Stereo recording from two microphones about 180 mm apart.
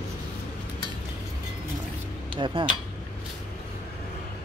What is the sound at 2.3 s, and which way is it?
Speech, 30° right (ahead or behind).